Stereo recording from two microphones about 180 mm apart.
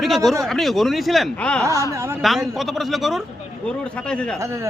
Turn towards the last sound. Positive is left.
turn(degrees=-15)  # may be behind; listen again after turning